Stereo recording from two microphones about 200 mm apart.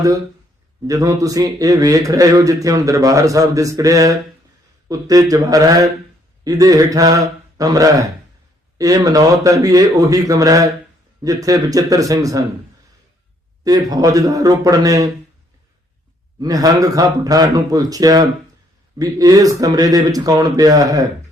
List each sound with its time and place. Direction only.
0.9 s speech: 15° right (ahead or behind)
13.7 s a man's voice: 20° right (ahead or behind)
16.4 s speech: 15° right (ahead or behind)